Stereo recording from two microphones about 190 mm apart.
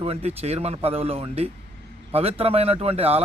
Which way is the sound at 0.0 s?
30° right (ahead or behind).